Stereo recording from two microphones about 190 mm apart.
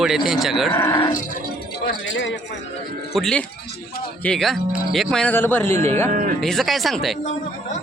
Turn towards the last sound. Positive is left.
turn(degrees=0)  # may be behind; listen again after turning